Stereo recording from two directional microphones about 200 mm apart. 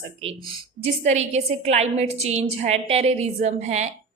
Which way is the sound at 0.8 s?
35° right (ahead or behind).